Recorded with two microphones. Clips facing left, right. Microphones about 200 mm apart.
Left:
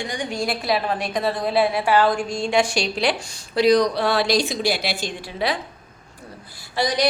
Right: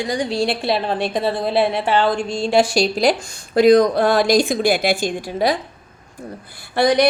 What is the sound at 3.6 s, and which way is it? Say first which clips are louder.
A woman's voice: right 5 dB; 50° right (ahead or behind).